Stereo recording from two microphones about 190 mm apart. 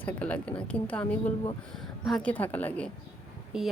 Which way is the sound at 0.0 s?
5° left (ahead or behind).